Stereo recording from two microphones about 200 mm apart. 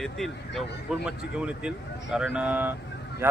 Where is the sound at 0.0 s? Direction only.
Centre (ahead or behind).